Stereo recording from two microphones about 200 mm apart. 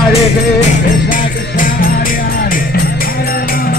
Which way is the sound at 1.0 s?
45° left (ahead or behind).